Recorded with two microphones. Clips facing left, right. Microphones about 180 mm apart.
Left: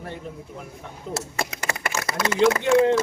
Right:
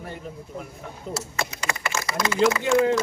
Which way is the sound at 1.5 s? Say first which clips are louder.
Left 1 dB; 50° left (ahead or behind).